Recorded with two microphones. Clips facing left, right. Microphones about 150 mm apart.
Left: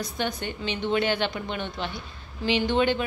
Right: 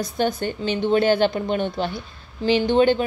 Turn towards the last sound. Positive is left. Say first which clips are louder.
# right 6 dB
turn(degrees=-35)  # may be behind; listen again after turning